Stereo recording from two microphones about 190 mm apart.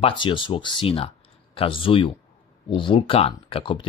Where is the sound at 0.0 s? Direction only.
25° left (ahead or behind).